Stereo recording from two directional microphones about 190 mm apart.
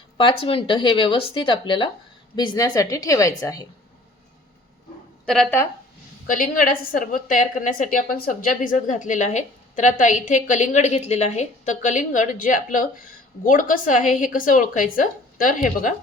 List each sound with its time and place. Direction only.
0.2 s speech: 25° left (ahead or behind)
5.2 s speech: 5° left (ahead or behind)
6.2 s a woman's voice: 45° left (ahead or behind)